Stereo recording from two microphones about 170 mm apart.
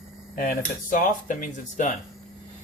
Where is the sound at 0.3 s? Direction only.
55° left (ahead or behind).